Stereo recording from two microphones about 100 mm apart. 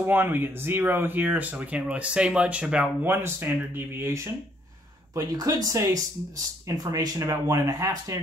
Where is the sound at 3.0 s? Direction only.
20° right (ahead or behind).